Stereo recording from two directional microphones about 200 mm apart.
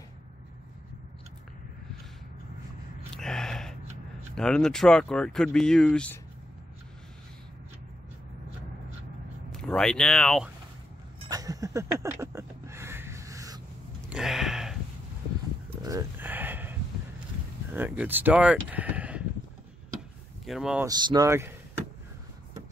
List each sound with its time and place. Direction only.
3.2 s gasp: 5° left (ahead or behind)
4.4 s speech: 5° left (ahead or behind)
9.5 s speech: 5° left (ahead or behind)
11.2 s a sound: 15° right (ahead or behind)
14.0 s a sound: 5° right (ahead or behind)
15.8 s a sound: 15° right (ahead or behind)
17.6 s speech: 10° right (ahead or behind)
20.4 s speech: 5° right (ahead or behind)
20.8 s speech: 20° right (ahead or behind)